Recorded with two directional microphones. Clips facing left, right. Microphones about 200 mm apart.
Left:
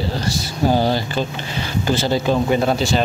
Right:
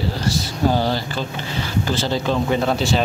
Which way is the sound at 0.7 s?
15° left (ahead or behind).